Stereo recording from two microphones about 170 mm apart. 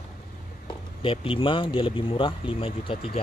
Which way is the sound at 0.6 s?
30° left (ahead or behind).